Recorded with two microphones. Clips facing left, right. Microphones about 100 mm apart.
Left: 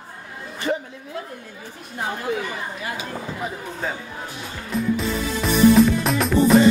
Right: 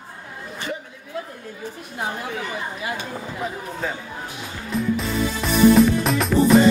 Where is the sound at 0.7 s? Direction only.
40° left (ahead or behind).